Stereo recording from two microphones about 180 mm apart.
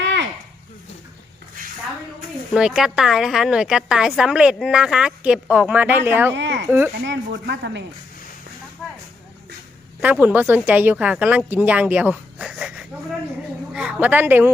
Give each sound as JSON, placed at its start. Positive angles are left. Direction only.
{"t": 0.0, "sound": "a sound", "side_deg": -80}
{"t": 2.5, "sound": "a woman's voice", "side_deg": -5}
{"t": 6.3, "sound": "speech", "side_deg": -80}
{"t": 6.7, "sound": "speech", "side_deg": -10}
{"t": 7.0, "sound": "speech", "side_deg": -75}
{"t": 10.0, "sound": "speech", "side_deg": -10}